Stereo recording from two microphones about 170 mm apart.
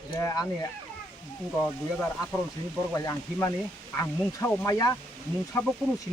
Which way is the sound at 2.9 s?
20° left (ahead or behind).